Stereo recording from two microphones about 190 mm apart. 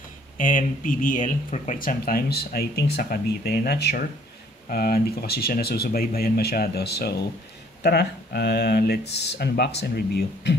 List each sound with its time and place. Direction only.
0.4 s speech: 45° left (ahead or behind); by 10.6 s 60° left (ahead or behind)